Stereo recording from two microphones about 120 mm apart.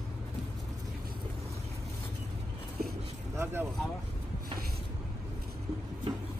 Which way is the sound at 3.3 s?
20° right (ahead or behind).